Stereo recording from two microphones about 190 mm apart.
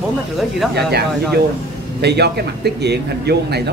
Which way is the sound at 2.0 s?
60° right (ahead or behind).